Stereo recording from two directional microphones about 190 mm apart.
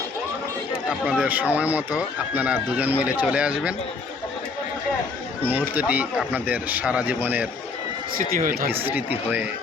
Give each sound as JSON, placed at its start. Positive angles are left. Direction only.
{"t": 0.9, "sound": "speech", "side_deg": -5}
{"t": 5.4, "sound": "speech", "side_deg": -10}
{"t": 8.2, "sound": "speech", "side_deg": -45}
{"t": 8.7, "sound": "speech", "side_deg": -10}